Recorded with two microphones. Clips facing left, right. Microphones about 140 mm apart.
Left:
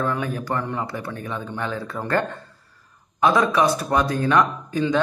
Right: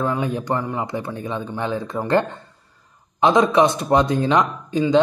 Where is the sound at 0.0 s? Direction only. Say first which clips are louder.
Right 2 dB; 15° right (ahead or behind).